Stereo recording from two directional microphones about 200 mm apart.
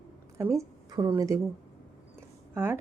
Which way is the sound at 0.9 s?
20° right (ahead or behind).